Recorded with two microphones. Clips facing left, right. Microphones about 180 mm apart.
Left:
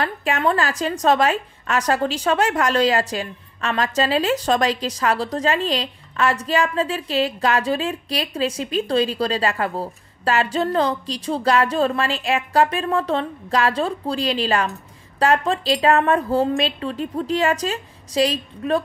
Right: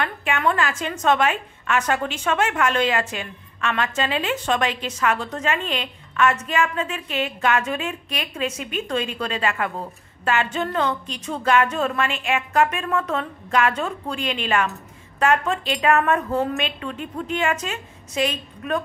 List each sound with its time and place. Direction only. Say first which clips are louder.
0.0 s a woman's voice: left 2 dB; 35° left (ahead or behind)